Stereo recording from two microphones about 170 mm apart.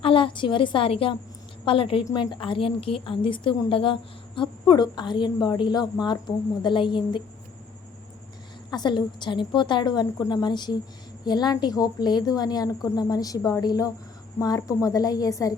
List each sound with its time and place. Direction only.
0.0 s a woman's voice: 30° left (ahead or behind)
8.7 s a woman's voice: 25° left (ahead or behind)